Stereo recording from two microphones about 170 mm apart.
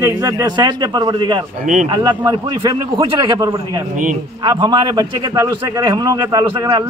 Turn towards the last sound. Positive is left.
turn(degrees=-25)  # may be behind; listen again after turning